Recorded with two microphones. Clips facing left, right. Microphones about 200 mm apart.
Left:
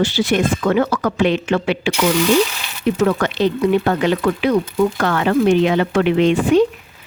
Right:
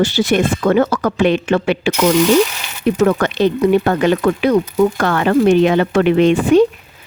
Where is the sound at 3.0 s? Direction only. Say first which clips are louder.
Right 3 dB; 50° right (ahead or behind).